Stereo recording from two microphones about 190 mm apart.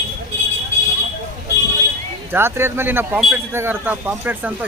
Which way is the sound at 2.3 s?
10° right (ahead or behind).